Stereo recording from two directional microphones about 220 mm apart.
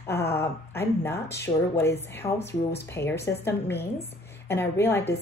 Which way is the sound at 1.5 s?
25° left (ahead or behind).